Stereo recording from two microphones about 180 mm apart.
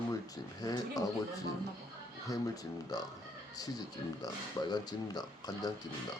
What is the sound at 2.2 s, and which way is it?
Speech, 20° left (ahead or behind).